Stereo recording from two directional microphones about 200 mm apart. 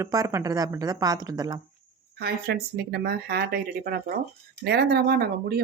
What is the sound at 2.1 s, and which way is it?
Speech, 55° right (ahead or behind).